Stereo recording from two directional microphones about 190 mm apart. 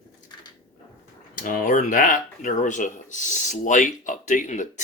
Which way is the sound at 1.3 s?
45° left (ahead or behind).